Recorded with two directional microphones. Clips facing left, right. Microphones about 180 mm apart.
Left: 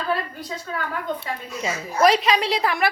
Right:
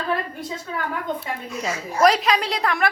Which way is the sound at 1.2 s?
Centre (ahead or behind).